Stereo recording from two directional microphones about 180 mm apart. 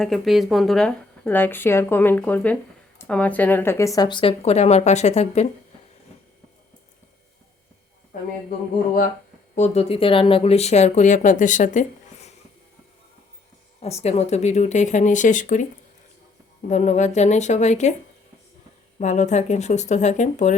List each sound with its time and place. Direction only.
0.0 s a woman's voice: centre (ahead or behind); by 5.5 s 40° left (ahead or behind)
9.6 s speech: 35° left (ahead or behind)
13.8 s speech: 35° left (ahead or behind)
16.6 s speech: 40° left (ahead or behind)
18.9 s speech: 40° left (ahead or behind)